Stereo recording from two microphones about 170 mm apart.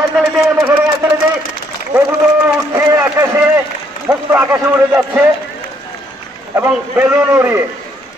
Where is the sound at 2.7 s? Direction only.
15° right (ahead or behind).